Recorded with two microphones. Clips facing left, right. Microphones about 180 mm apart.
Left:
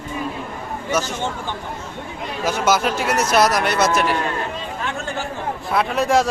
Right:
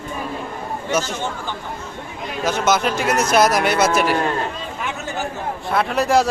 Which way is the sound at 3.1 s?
45° right (ahead or behind).